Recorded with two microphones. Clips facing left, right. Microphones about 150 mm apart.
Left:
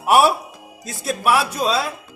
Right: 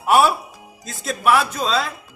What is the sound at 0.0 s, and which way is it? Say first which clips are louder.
Music: left 1 dB; 10° left (ahead or behind).